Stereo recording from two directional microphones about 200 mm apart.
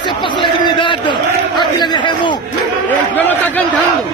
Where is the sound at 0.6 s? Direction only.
25° left (ahead or behind).